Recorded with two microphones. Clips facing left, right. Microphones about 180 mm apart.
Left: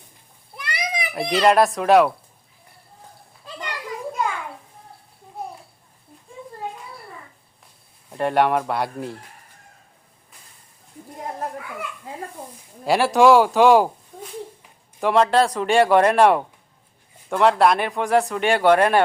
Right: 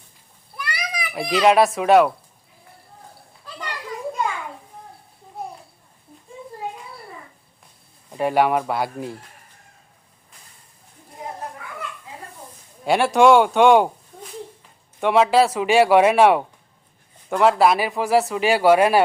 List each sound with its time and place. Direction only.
0.5 s a sound: 20° left (ahead or behind)
1.1 s speech: centre (ahead or behind)
8.1 s speech: centre (ahead or behind)
12.8 s speech: centre (ahead or behind)